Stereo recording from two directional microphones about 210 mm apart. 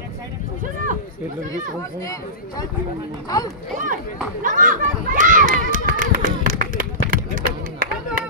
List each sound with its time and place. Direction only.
1.8 s speech: 15° left (ahead or behind)
3.7 s speech: 40° right (ahead or behind)
4.4 s children playing: 40° right (ahead or behind)